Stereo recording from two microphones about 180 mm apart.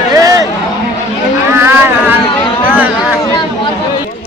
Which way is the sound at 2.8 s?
5° right (ahead or behind).